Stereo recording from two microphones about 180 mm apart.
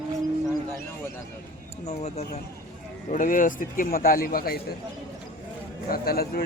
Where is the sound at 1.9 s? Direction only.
35° left (ahead or behind); by 4.5 s 55° left (ahead or behind).